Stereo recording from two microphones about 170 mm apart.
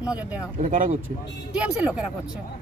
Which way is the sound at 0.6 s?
50° right (ahead or behind).